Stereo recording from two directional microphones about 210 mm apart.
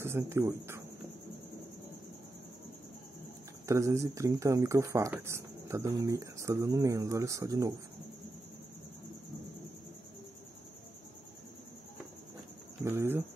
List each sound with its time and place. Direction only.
0.0 s speech: 10° right (ahead or behind)
3.6 s speech: 15° right (ahead or behind)
12.8 s speech: 10° right (ahead or behind)